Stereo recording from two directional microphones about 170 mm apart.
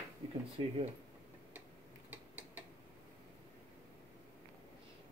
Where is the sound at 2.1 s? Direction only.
10° right (ahead or behind).